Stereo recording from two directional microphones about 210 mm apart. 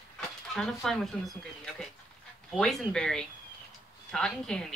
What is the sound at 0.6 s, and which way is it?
Speech, 5° left (ahead or behind).